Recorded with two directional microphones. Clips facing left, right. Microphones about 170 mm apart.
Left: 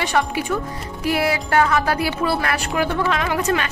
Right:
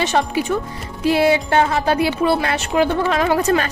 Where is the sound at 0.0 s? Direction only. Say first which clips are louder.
Right 2 dB; 25° right (ahead or behind).